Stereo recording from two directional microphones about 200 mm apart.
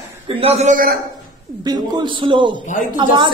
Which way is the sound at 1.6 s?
20° right (ahead or behind).